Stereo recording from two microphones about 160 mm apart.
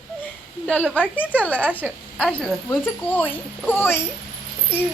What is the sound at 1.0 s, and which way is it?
Speech, 10° left (ahead or behind).